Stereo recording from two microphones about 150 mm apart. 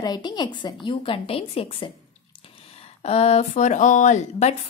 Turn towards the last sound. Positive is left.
turn(degrees=55)  # may be behind; listen again after turning